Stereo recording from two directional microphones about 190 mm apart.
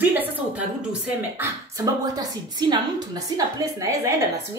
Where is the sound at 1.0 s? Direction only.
15° right (ahead or behind).